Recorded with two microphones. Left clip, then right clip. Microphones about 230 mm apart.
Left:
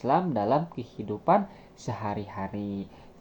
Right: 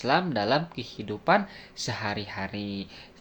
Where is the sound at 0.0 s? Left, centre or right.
Right.